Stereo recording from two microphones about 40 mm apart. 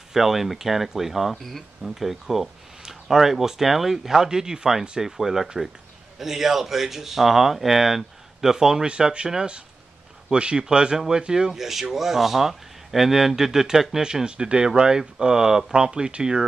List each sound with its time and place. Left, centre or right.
0.1 s speech: centre
1.3 s speech: centre
11.5 s speech: centre; by 16.4 s right